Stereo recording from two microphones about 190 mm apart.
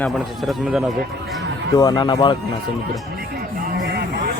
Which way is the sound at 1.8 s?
20° left (ahead or behind).